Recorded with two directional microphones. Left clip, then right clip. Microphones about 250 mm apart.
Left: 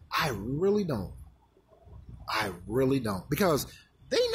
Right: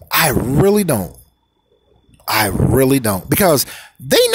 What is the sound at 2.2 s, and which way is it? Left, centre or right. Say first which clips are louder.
Speech: right 15 dB; right.